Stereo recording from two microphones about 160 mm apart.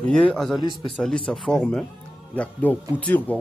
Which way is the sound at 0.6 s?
30° left (ahead or behind).